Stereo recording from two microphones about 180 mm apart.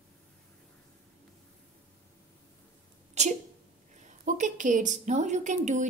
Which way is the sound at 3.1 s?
40° right (ahead or behind).